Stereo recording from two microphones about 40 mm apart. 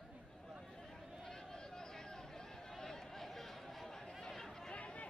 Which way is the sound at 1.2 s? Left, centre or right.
Centre.